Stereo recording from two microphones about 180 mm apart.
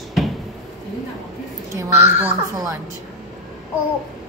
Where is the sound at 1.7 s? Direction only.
15° right (ahead or behind).